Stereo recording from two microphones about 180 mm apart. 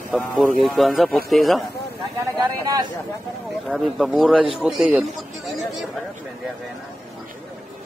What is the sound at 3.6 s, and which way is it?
A man's voice, centre (ahead or behind).